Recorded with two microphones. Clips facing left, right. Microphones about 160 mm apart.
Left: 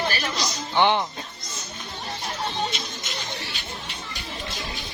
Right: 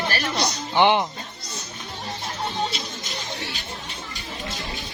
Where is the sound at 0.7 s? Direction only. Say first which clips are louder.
Right 2 dB; 15° right (ahead or behind).